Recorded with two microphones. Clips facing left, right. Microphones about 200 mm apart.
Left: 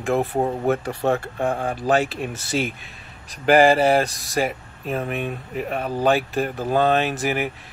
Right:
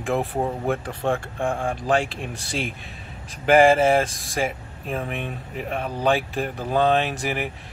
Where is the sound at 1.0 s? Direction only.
40° left (ahead or behind).